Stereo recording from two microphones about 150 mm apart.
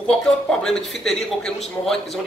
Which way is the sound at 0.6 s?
5° left (ahead or behind).